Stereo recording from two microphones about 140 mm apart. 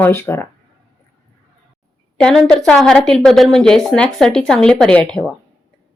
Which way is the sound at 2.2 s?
5° left (ahead or behind).